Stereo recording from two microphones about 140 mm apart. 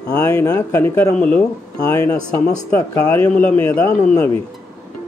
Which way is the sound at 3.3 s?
10° left (ahead or behind).